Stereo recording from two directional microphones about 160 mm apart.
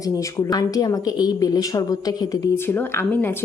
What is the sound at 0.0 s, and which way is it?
Speech, 20° left (ahead or behind).